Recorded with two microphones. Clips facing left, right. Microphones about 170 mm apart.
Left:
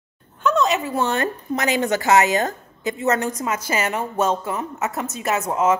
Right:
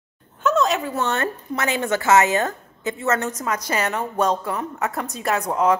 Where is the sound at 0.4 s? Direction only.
Centre (ahead or behind).